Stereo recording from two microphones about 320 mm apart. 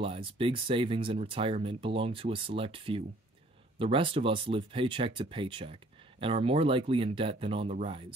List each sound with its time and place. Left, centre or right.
0.0 s speech: centre